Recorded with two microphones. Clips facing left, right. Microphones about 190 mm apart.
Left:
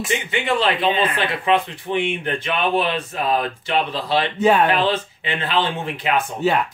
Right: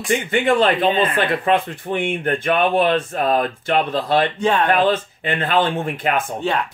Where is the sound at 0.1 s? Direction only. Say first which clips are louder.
Right 6 dB; 50° right (ahead or behind).